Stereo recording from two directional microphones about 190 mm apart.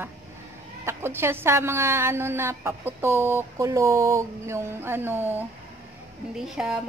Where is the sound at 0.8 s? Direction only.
10° right (ahead or behind).